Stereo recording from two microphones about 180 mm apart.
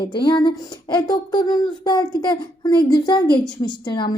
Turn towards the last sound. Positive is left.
turn(degrees=25)  # may be behind; listen again after turning